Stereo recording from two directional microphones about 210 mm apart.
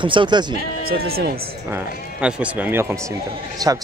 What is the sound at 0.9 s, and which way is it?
Speech, 45° right (ahead or behind).